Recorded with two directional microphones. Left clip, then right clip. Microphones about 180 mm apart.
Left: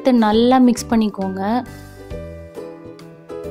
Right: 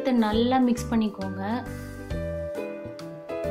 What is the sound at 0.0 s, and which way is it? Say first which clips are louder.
A woman's voice: left 9 dB; 45° left (ahead or behind).